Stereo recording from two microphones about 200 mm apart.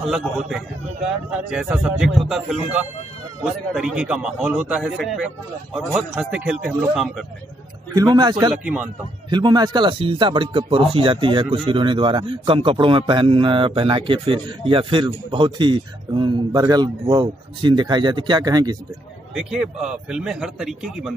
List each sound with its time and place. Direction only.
0.0 s a man's voice: centre (ahead or behind)
7.9 s a man's voice: 20° right (ahead or behind)
8.6 s speech: 5° right (ahead or behind)
9.3 s a man's voice: 20° right (ahead or behind)
19.3 s a man's voice: 5° right (ahead or behind)